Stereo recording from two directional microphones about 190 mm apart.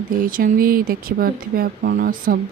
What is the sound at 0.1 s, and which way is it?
Speech, 45° right (ahead or behind).